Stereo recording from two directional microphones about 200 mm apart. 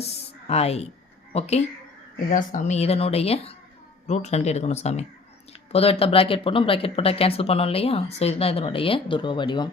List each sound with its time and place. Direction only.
0.4 s speech: 30° left (ahead or behind)